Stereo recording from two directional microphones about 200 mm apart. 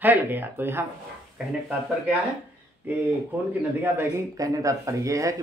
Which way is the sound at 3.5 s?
15° right (ahead or behind).